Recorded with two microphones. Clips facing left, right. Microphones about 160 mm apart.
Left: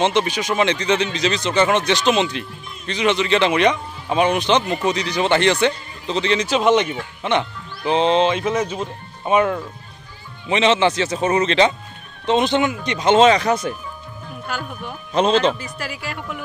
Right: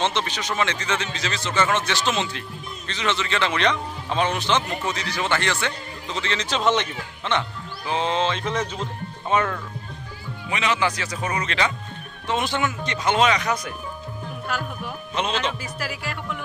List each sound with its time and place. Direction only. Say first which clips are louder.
0.0 s speech: left 6 dB; 15° left (ahead or behind)
10.5 s speech: left 7 dB; 25° left (ahead or behind)
14.5 s speech: left 1 dB; centre (ahead or behind)
15.2 s speech: left 9 dB; 35° left (ahead or behind)
15.6 s speech: left 1 dB; centre (ahead or behind)